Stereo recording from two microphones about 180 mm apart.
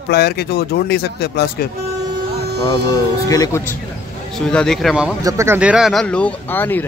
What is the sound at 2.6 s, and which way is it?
Speech, 25° left (ahead or behind).